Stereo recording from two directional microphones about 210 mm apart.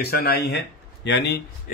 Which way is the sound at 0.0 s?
45° left (ahead or behind).